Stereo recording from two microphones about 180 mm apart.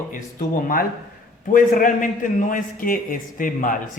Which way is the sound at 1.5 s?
50° left (ahead or behind).